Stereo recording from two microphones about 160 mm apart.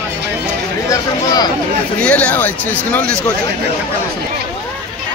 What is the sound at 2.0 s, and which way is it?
Speech, 5° left (ahead or behind).